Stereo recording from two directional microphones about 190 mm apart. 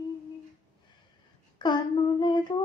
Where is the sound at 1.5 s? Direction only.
25° left (ahead or behind).